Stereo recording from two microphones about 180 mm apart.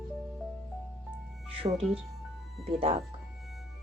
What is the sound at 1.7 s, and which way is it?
Speech, 35° right (ahead or behind).